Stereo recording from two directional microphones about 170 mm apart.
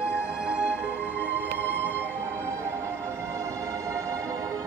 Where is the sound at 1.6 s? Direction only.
10° left (ahead or behind).